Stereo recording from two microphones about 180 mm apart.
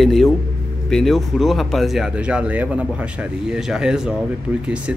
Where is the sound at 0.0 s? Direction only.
Centre (ahead or behind).